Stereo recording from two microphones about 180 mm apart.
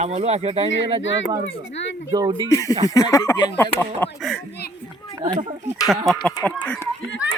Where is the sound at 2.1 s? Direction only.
20° right (ahead or behind).